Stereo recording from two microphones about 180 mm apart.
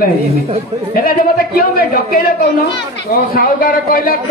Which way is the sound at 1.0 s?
55° left (ahead or behind).